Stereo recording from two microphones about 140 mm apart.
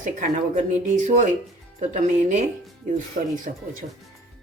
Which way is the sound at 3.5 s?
70° right (ahead or behind).